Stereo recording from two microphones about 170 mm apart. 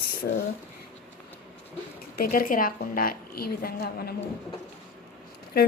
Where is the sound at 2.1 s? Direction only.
55° left (ahead or behind).